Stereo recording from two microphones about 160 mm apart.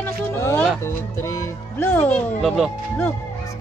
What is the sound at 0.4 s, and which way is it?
Music, 15° left (ahead or behind).